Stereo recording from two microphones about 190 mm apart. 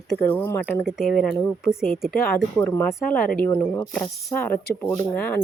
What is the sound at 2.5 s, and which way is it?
Speech, 10° left (ahead or behind).